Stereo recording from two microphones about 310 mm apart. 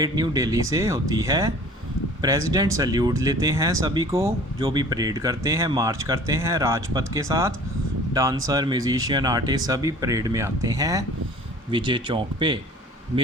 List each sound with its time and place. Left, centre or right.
0.0 s speech: centre